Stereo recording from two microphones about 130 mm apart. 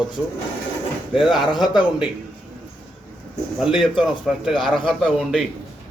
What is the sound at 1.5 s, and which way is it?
Speech, 35° left (ahead or behind).